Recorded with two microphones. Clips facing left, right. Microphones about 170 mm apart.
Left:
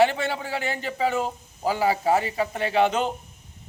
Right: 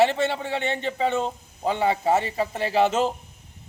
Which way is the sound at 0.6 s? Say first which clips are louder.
Right 2 dB; 25° right (ahead or behind).